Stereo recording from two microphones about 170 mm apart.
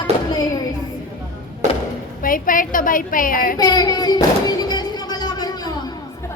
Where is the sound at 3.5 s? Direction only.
25° left (ahead or behind).